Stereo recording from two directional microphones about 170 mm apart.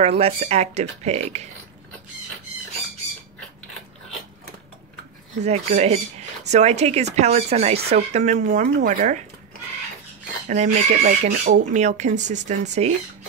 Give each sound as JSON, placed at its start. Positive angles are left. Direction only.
{"t": 0.0, "sound": "speech", "side_deg": -35}
{"t": 5.4, "sound": "speech", "side_deg": -40}
{"t": 10.5, "sound": "speech", "side_deg": -45}